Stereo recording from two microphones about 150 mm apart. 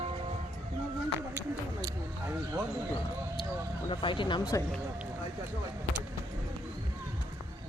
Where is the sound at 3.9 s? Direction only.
35° left (ahead or behind).